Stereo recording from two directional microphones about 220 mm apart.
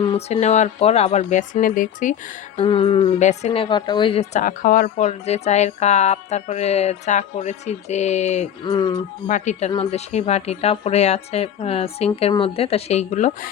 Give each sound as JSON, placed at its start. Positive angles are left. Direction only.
{"t": 0.0, "sound": "speech", "side_deg": 25}
{"t": 2.6, "sound": "a woman's voice", "side_deg": 25}
{"t": 9.2, "sound": "a woman's voice", "side_deg": 30}